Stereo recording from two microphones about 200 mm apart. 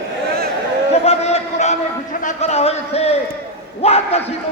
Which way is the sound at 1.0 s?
30° left (ahead or behind).